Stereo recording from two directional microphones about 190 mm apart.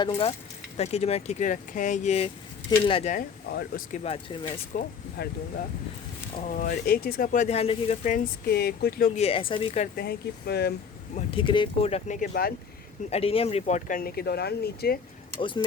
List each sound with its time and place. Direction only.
0.8 s speech: 35° left (ahead or behind)
2.6 s speech: 25° left (ahead or behind)
3.5 s speech: 55° left (ahead or behind)
3.9 s speech: 30° left (ahead or behind)
4.7 s speech: 45° left (ahead or behind)
5.2 s speech: 60° left (ahead or behind)
6.5 s speech: 50° left (ahead or behind)
7.4 s speech: 30° left (ahead or behind); by 9.1 s 50° left (ahead or behind)
9.1 s speech: 30° left (ahead or behind)
9.9 s speech: 55° left (ahead or behind)
11.1 s speech: 30° left (ahead or behind)
12.3 s speech: 50° left (ahead or behind)
13.1 s speech: 30° left (ahead or behind); by 14.9 s 55° left (ahead or behind)
15.4 s speech: 25° left (ahead or behind)